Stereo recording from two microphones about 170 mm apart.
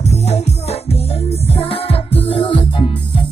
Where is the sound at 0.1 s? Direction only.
40° left (ahead or behind).